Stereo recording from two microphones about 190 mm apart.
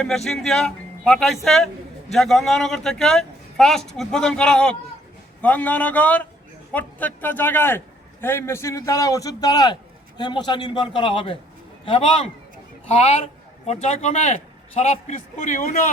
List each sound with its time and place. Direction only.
0.0 s a man's voice: centre (ahead or behind); by 15.7 s 40° left (ahead or behind)